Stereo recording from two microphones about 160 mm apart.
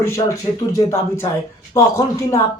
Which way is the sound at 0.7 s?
20° left (ahead or behind).